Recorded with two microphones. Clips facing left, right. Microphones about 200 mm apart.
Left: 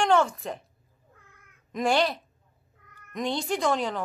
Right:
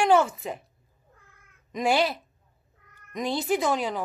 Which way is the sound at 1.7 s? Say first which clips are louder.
Even; centre (ahead or behind).